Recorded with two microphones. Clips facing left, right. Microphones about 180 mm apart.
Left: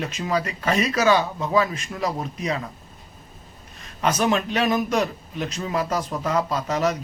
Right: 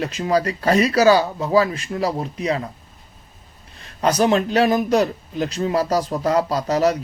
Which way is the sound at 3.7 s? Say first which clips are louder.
Right 4 dB; 35° right (ahead or behind).